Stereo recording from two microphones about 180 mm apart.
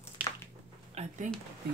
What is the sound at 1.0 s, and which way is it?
Speech, 45° right (ahead or behind).